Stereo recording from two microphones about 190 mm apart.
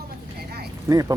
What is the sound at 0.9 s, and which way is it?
Speech, 15° right (ahead or behind).